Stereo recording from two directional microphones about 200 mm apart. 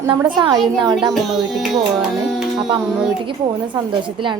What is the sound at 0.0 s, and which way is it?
Speech, 20° right (ahead or behind).